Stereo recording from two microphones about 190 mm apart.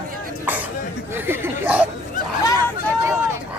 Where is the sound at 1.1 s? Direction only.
10° right (ahead or behind).